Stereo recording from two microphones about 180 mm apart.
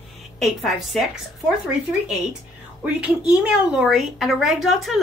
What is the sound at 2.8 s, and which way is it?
A woman's voice, 5° right (ahead or behind).